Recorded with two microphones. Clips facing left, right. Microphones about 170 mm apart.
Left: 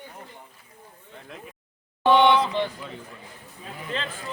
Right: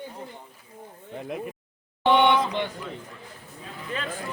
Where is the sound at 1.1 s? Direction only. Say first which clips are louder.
Right 10 dB; 60° right (ahead or behind).